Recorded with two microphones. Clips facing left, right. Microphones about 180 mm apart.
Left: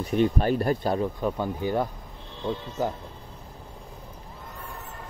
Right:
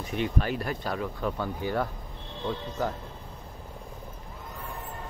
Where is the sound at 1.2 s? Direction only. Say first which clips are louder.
Left 3 dB; 15° left (ahead or behind).